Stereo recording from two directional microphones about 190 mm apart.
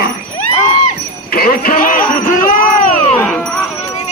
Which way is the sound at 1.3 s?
50° left (ahead or behind).